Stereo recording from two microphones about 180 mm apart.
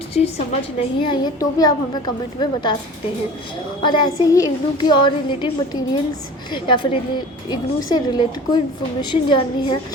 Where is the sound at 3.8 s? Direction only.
25° left (ahead or behind).